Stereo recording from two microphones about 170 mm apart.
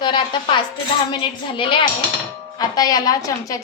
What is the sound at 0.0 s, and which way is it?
A woman's voice, 30° left (ahead or behind).